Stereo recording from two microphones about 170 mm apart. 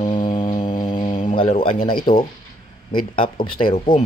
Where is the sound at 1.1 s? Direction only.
35° left (ahead or behind).